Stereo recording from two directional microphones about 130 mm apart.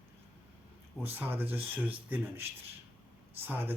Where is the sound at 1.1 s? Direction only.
15° right (ahead or behind).